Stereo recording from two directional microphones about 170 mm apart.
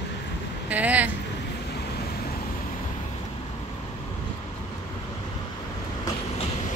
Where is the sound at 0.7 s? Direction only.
10° right (ahead or behind).